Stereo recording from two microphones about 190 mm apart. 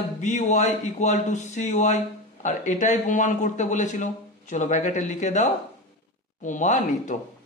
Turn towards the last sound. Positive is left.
turn(degrees=40)  # may be behind; listen again after turning